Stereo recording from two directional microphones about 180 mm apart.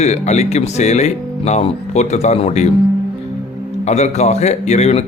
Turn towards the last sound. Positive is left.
turn(degrees=40)  # may be behind; listen again after turning